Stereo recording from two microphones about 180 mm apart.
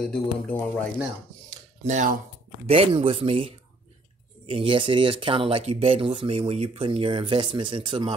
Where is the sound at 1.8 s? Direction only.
45° right (ahead or behind).